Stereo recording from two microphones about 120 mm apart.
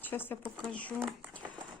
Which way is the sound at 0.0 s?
15° left (ahead or behind).